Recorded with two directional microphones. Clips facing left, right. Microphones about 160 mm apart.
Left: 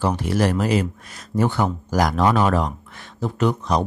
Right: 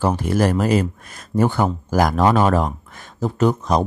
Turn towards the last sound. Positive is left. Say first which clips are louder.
# right 3 dB
turn(degrees=-45)  # may be behind; listen again after turning